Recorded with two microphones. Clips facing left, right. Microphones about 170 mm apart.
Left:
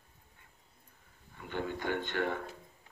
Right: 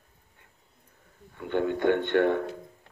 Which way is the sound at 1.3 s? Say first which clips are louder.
Right 10 dB; 60° right (ahead or behind).